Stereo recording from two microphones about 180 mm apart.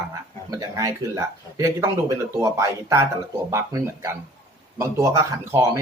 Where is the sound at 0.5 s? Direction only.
20° right (ahead or behind).